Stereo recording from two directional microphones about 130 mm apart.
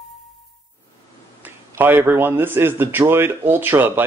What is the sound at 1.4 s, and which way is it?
A man's voice, 15° right (ahead or behind).